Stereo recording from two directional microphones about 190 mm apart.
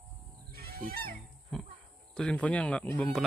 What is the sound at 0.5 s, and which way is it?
Goose, 55° right (ahead or behind).